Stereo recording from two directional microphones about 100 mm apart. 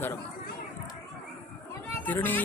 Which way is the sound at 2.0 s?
20° left (ahead or behind).